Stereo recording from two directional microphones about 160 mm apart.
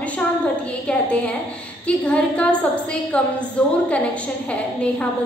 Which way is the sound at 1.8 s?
5° left (ahead or behind).